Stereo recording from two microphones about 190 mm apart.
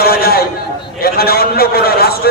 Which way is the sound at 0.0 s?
55° left (ahead or behind).